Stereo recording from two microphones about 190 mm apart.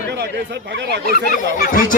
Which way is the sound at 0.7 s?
65° right (ahead or behind).